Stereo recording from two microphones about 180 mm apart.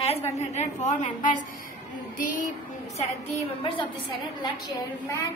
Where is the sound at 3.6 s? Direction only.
25° left (ahead or behind).